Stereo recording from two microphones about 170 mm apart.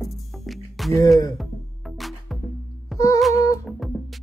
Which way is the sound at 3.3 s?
20° left (ahead or behind).